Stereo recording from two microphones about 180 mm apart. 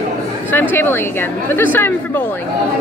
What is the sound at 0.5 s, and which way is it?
A woman's voice, 10° left (ahead or behind).